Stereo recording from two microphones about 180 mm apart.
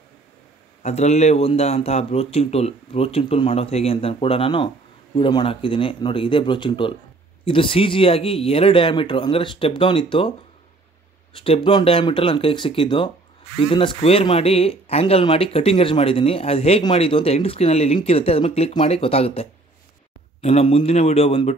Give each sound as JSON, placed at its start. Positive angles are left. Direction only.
{"t": 0.8, "sound": "a man's voice", "side_deg": 35}
{"t": 11.3, "sound": "a man's voice", "side_deg": 30}